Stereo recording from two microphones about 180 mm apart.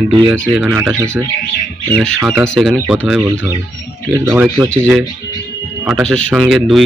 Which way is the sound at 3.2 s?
20° right (ahead or behind).